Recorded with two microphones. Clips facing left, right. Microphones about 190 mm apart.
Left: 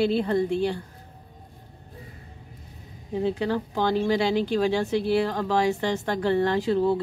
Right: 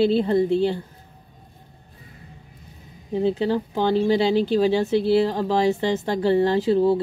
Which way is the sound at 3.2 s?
20° right (ahead or behind).